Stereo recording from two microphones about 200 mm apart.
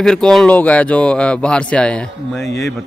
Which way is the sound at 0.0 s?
5° left (ahead or behind).